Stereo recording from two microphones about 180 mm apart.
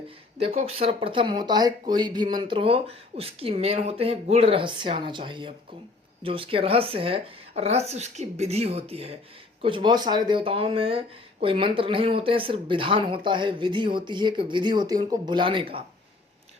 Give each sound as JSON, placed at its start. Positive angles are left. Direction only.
{"t": 0.4, "sound": "speech", "side_deg": -30}